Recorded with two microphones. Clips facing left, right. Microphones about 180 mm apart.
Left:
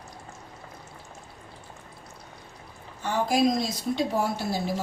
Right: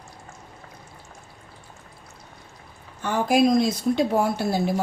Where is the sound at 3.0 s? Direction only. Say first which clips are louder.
Right 4 dB; 55° right (ahead or behind).